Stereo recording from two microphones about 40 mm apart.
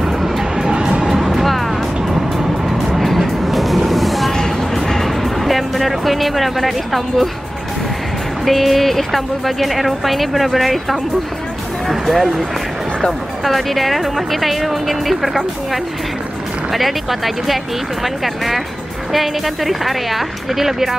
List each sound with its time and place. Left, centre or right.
0.0 s music: centre
1.0 s music: centre
4.4 s music: centre
8.5 s speech: centre